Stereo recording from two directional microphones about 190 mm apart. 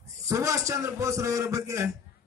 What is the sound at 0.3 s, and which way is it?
A man's voice, 15° right (ahead or behind).